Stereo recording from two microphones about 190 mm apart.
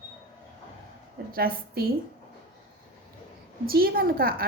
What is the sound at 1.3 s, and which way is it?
Speech, 50° right (ahead or behind).